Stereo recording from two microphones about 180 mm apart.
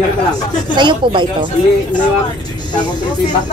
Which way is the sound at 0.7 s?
25° right (ahead or behind).